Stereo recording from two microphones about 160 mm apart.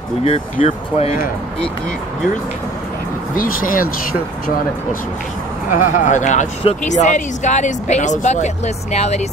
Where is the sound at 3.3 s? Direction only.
60° left (ahead or behind).